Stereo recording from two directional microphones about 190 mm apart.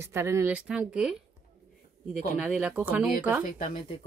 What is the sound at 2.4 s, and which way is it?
Speech, 5° right (ahead or behind).